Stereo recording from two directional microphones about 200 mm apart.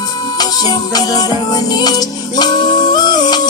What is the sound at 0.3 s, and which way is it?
Music, 20° left (ahead or behind).